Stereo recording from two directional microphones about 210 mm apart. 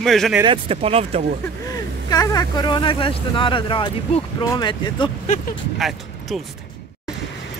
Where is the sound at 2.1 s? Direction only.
15° left (ahead or behind).